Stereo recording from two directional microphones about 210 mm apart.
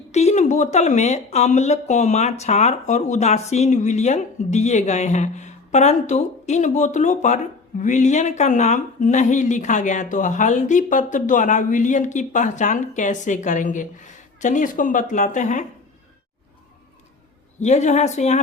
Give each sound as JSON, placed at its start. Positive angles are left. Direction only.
{"t": 0.1, "sound": "speech", "side_deg": 30}
{"t": 17.6, "sound": "speech", "side_deg": 35}